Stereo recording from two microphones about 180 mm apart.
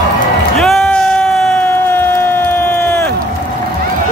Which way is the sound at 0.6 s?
Centre (ahead or behind).